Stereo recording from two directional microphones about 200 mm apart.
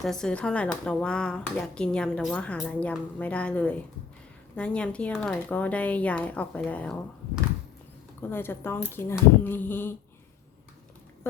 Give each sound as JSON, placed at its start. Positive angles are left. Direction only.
{"t": 0.0, "sound": "speech", "side_deg": 0}
{"t": 8.3, "sound": "speech", "side_deg": 10}